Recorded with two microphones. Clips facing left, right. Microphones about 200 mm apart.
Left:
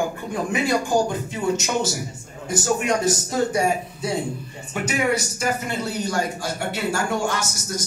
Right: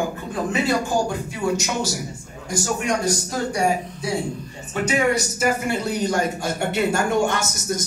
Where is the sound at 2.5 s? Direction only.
25° left (ahead or behind).